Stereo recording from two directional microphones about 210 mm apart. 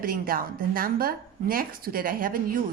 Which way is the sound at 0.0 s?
45° right (ahead or behind).